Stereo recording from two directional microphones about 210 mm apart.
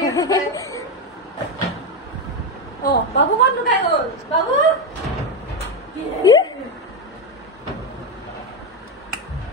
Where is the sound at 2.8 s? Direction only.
55° left (ahead or behind).